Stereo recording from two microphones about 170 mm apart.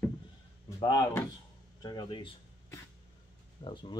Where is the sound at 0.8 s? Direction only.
25° left (ahead or behind).